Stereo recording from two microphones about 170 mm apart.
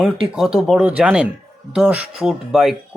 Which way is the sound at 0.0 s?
Centre (ahead or behind).